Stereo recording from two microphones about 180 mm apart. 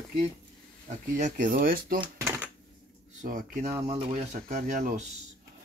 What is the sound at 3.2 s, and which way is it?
Speech, 45° right (ahead or behind).